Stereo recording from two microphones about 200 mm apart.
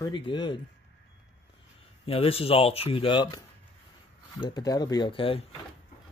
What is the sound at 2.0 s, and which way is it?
Speech, 30° left (ahead or behind).